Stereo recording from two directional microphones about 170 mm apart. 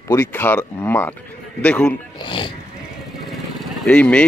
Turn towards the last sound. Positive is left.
turn(degrees=5)  # may be behind; listen again after turning